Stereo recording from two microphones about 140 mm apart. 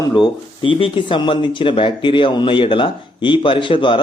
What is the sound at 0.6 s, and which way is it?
Speech, 40° left (ahead or behind).